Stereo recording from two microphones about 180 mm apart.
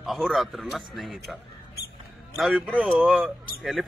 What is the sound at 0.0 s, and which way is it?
A man's voice, centre (ahead or behind).